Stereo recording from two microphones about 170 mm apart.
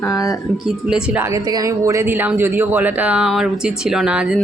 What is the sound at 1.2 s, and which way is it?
Speech, 20° right (ahead or behind).